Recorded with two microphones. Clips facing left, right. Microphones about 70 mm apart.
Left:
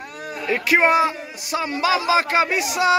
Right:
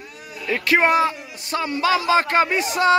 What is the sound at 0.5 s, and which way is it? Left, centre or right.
A man's voice, centre.